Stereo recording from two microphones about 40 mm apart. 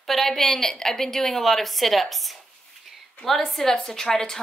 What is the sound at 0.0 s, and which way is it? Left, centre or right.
Speech, centre.